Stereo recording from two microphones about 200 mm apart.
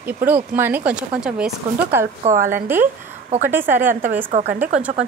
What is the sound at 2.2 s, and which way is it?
Speech, 40° right (ahead or behind).